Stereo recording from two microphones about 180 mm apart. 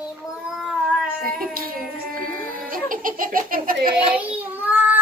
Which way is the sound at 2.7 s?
50° right (ahead or behind).